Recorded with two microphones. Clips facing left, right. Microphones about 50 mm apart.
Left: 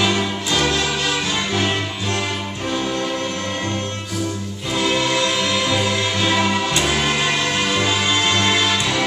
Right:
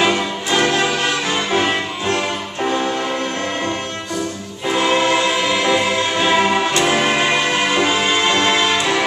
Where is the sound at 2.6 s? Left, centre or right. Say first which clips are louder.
Right 5 dB; right.